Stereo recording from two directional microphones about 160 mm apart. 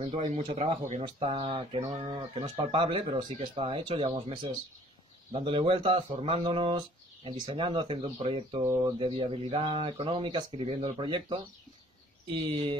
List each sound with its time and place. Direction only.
0.1 s speech: 45° right (ahead or behind)
0.4 s speech: 30° right (ahead or behind)
8.6 s speech: 15° right (ahead or behind)
8.9 s speech: 35° right (ahead or behind)